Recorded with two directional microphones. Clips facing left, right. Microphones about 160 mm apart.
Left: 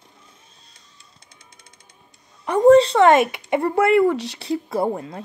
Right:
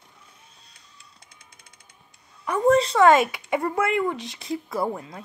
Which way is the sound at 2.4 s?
30° left (ahead or behind).